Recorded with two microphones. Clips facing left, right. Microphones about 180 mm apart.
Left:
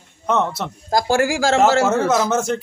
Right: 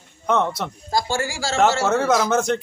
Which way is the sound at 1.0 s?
90° left.